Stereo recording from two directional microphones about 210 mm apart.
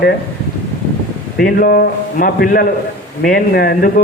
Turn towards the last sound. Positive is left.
turn(degrees=45)  # may be behind; listen again after turning